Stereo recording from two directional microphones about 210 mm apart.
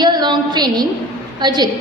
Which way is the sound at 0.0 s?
20° right (ahead or behind).